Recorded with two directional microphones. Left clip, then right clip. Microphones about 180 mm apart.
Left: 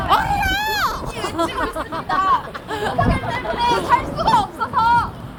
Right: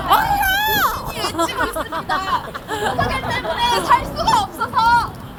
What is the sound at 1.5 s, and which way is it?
Speech, 10° right (ahead or behind).